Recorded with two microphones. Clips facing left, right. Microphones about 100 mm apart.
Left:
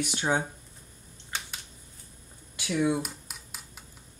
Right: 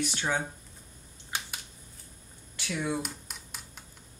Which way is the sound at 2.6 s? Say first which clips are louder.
Left 6 dB; 15° left (ahead or behind).